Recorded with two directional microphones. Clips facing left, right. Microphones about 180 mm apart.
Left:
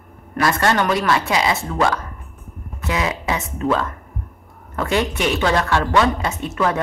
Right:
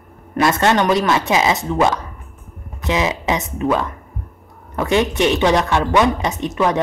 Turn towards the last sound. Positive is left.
turn(degrees=-20)  # may be behind; listen again after turning